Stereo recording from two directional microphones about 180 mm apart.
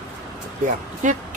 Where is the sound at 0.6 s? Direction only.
45° right (ahead or behind).